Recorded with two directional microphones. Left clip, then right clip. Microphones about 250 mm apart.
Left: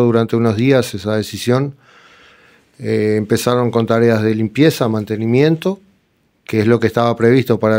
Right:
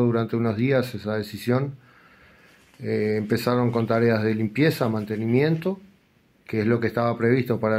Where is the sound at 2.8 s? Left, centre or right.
Left.